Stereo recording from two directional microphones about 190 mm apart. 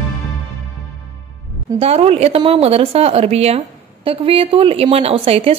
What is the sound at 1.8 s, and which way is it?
A woman's voice, 30° right (ahead or behind).